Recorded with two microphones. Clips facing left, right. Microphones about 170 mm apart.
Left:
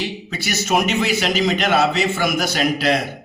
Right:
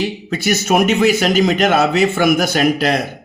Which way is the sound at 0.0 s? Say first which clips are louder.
Right 7 dB; 50° right (ahead or behind).